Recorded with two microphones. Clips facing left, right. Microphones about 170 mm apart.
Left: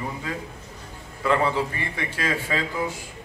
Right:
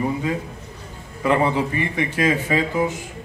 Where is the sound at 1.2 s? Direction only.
15° right (ahead or behind).